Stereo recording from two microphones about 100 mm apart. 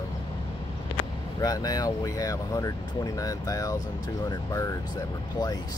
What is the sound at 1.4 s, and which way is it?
Speech, 40° left (ahead or behind).